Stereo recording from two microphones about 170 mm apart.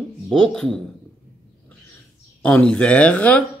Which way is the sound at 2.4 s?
5° left (ahead or behind).